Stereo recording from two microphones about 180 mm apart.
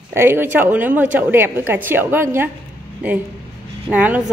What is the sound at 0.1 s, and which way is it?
A woman's voice, 10° right (ahead or behind).